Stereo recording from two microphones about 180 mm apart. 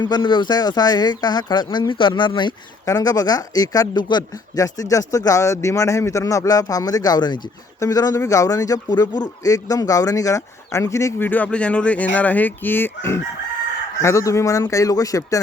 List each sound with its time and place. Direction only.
0.0 s speech: 25° left (ahead or behind)